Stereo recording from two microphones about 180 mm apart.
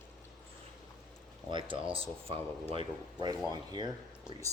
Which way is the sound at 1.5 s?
25° right (ahead or behind).